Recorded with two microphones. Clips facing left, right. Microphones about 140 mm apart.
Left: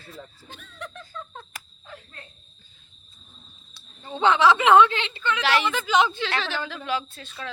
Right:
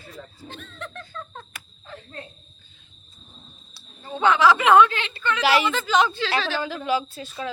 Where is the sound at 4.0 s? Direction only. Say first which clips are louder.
Right 1 dB; 25° left (ahead or behind).